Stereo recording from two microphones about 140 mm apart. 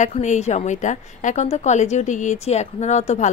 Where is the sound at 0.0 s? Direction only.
55° left (ahead or behind).